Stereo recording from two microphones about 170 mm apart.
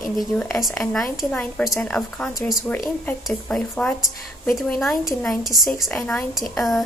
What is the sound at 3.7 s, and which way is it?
A woman's voice, 5° left (ahead or behind).